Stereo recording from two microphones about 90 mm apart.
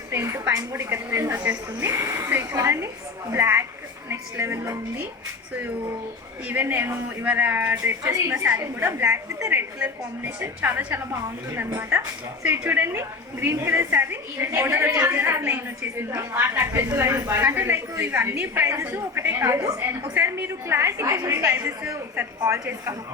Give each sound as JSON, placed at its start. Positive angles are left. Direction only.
{"t": 0.1, "sound": "a woman's voice", "side_deg": -30}
{"t": 6.5, "sound": "a woman's voice", "side_deg": -20}
{"t": 9.7, "sound": "a woman's voice", "side_deg": -15}
{"t": 17.4, "sound": "a woman's voice", "side_deg": -20}